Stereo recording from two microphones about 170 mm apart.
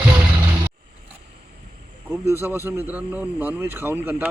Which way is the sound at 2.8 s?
10° right (ahead or behind).